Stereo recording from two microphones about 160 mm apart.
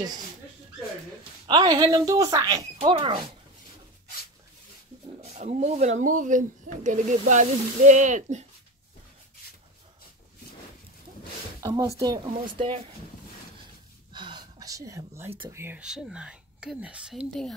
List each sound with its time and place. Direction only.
1.5 s a woman's voice: 25° right (ahead or behind)
2.8 s speech: 35° right (ahead or behind)
5.2 s speech: 45° right (ahead or behind)
11.6 s speech: 20° right (ahead or behind)
12.4 s speech: 30° right (ahead or behind)
14.1 s whispering: 30° right (ahead or behind)
15.5 s speech: 15° right (ahead or behind)
15.8 s speech: 5° right (ahead or behind)